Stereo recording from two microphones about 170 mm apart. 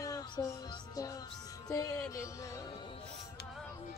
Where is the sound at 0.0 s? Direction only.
20° left (ahead or behind).